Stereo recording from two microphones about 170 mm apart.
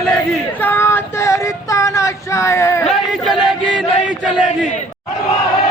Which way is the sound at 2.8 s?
Centre (ahead or behind).